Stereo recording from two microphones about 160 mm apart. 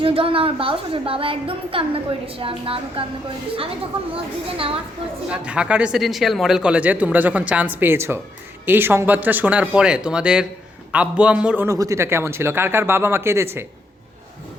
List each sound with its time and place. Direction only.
0.0 s a woman's voice: 35° right (ahead or behind)
4.1 s a woman's voice: 35° right (ahead or behind)
5.3 s speech: 5° right (ahead or behind)